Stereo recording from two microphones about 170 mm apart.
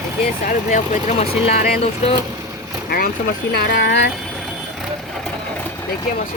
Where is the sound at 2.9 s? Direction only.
60° left (ahead or behind).